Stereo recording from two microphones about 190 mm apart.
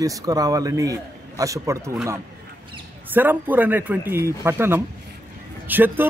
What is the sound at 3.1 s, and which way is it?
A man's voice, 10° right (ahead or behind).